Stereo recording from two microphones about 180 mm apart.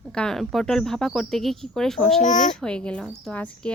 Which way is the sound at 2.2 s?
45° left (ahead or behind).